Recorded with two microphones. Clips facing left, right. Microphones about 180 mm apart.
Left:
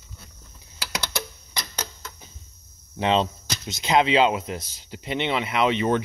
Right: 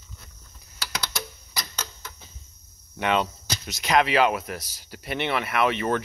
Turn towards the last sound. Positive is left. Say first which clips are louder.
# left 2 dB
turn(degrees=20)  # may be behind; listen again after turning